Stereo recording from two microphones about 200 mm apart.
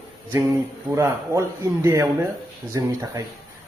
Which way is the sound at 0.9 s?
15° right (ahead or behind).